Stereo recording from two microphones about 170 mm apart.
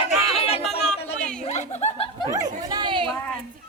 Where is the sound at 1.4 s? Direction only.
40° left (ahead or behind).